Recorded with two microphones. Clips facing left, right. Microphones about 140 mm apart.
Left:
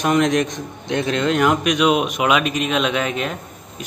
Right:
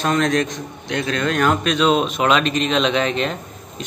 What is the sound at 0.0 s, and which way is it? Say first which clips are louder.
A man's voice: left 1 dB; 15° left (ahead or behind).